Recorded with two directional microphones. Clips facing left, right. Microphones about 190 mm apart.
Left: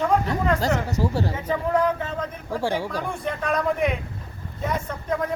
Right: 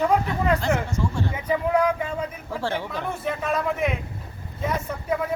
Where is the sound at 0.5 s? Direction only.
40° left (ahead or behind).